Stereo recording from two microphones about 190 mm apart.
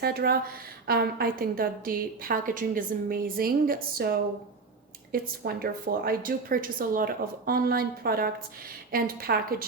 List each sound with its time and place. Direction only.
0.0 s a woman's voice: 55° right (ahead or behind)
5.1 s a woman's voice: 50° right (ahead or behind)